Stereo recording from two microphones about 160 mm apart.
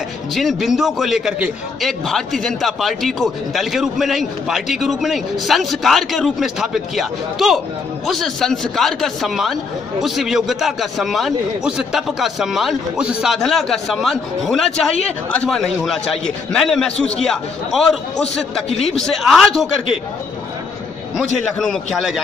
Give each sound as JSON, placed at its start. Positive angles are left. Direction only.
{"t": 0.3, "sound": "a man's voice", "side_deg": 0}
{"t": 18.7, "sound": "a man's voice", "side_deg": 40}
{"t": 18.9, "sound": "a man's voice", "side_deg": 5}
{"t": 21.5, "sound": "a man's voice", "side_deg": 0}